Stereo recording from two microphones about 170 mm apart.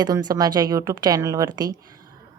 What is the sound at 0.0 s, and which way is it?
A woman's voice, 25° right (ahead or behind).